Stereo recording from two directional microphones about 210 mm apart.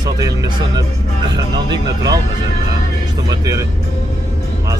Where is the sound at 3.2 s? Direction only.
15° right (ahead or behind).